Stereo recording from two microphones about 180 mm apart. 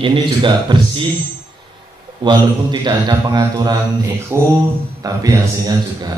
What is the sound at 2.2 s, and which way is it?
A man's voice, 25° right (ahead or behind).